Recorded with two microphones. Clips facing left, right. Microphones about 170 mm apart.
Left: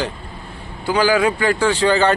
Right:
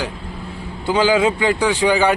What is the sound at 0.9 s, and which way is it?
Speech, 20° right (ahead or behind).